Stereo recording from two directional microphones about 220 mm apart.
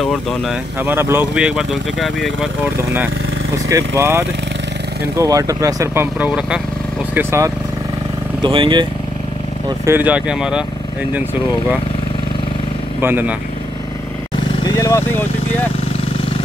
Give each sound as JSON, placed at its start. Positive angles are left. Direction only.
{"t": 0.0, "sound": "speech", "side_deg": 0}
{"t": 0.8, "sound": "speech", "side_deg": -10}
{"t": 3.5, "sound": "speech", "side_deg": -15}
{"t": 9.8, "sound": "speech", "side_deg": -10}
{"t": 13.0, "sound": "speech", "side_deg": -10}
{"t": 14.6, "sound": "vehicle", "side_deg": 15}